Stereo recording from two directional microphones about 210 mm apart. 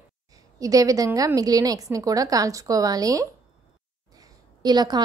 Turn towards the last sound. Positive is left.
turn(degrees=-20)  # may be behind; listen again after turning